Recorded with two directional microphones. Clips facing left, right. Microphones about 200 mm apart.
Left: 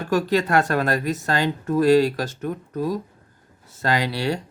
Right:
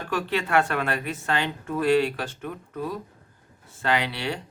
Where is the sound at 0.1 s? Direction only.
40° left (ahead or behind).